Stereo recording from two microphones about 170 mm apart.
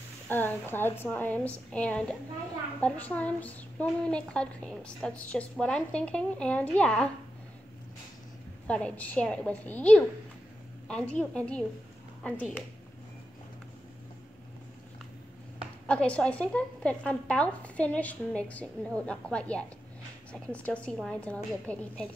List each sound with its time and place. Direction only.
0.3 s a woman's voice: 10° left (ahead or behind)
8.6 s a woman's voice: 5° left (ahead or behind)
15.9 s a woman's voice: 5° left (ahead or behind)